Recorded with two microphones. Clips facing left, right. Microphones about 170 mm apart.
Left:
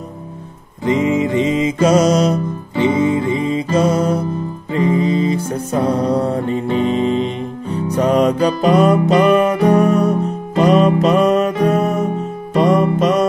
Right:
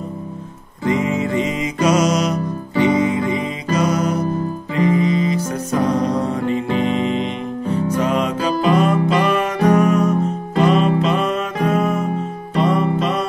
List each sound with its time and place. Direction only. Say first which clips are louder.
0.8 s music: left 3 dB; 20° left (ahead or behind); by 13.3 s 45° left (ahead or behind)